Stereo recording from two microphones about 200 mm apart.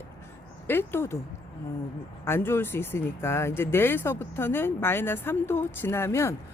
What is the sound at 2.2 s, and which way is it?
Speech, 10° left (ahead or behind).